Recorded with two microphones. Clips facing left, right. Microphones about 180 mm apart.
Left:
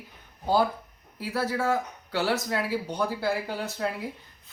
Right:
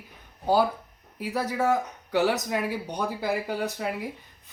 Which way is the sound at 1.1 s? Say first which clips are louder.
Right 1 dB; 15° right (ahead or behind).